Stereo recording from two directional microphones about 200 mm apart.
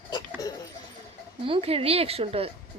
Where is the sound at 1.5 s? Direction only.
30° right (ahead or behind).